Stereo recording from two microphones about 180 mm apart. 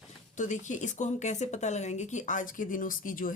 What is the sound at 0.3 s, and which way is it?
Speech, 45° left (ahead or behind).